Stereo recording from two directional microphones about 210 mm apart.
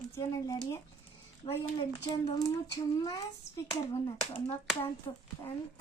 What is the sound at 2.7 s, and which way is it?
Speech, 15° left (ahead or behind).